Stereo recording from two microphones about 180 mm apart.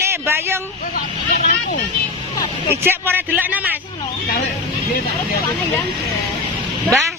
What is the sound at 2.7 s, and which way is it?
Speech, 15° right (ahead or behind).